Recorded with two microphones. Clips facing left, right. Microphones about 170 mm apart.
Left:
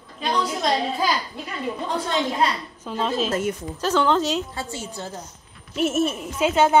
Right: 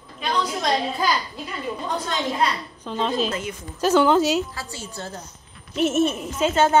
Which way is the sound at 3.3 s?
45° left (ahead or behind).